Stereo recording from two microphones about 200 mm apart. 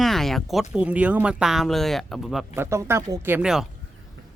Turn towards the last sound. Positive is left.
turn(degrees=-5)  # may be behind; listen again after turning